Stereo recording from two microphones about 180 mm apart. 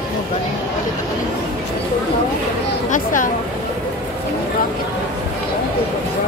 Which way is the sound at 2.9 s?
45° left (ahead or behind).